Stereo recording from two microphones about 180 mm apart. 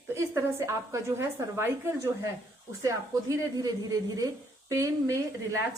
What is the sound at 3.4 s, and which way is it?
A woman's voice, 20° right (ahead or behind).